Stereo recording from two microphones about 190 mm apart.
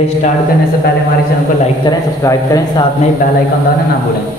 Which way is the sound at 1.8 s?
20° left (ahead or behind).